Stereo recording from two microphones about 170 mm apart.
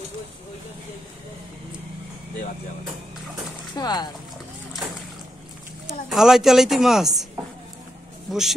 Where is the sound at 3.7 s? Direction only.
25° left (ahead or behind).